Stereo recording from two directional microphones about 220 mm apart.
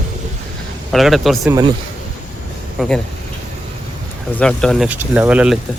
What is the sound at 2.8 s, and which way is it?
Speech, centre (ahead or behind).